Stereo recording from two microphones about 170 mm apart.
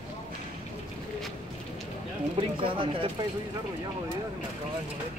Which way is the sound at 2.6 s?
30° right (ahead or behind).